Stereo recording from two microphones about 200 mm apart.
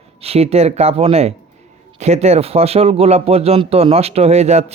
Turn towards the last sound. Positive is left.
turn(degrees=-35)  # may be behind; listen again after turning